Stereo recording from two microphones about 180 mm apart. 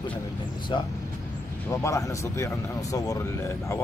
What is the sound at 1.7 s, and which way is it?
Speech, 15° left (ahead or behind).